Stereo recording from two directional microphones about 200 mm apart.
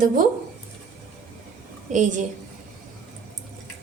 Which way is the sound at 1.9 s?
40° right (ahead or behind).